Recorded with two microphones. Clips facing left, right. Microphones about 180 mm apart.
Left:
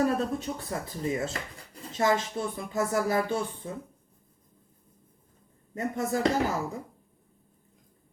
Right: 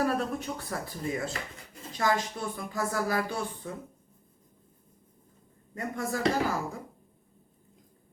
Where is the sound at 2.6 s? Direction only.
25° left (ahead or behind).